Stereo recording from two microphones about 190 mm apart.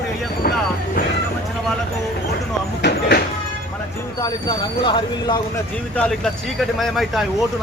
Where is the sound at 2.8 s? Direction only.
60° left (ahead or behind).